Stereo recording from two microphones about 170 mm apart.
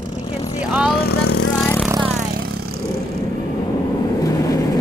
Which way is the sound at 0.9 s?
65° left (ahead or behind).